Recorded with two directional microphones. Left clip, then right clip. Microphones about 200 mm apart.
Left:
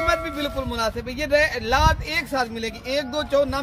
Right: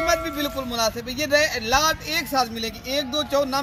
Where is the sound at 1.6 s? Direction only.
15° left (ahead or behind).